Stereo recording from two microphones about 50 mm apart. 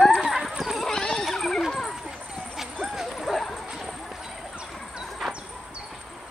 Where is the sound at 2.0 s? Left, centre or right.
Centre.